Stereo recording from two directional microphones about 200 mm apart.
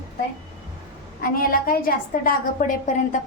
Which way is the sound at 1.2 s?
45° left (ahead or behind).